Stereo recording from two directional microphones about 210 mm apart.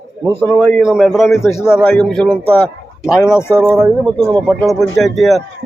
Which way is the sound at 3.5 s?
5° right (ahead or behind).